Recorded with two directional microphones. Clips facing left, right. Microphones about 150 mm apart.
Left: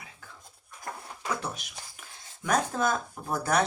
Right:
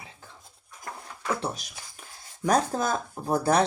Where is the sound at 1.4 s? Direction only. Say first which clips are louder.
Right 4 dB; 35° right (ahead or behind).